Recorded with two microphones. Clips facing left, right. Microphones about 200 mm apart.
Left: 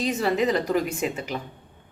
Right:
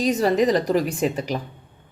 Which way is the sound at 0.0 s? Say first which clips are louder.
Right 4 dB; 40° right (ahead or behind).